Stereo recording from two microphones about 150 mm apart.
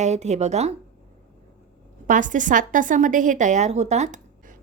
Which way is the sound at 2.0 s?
60° right (ahead or behind).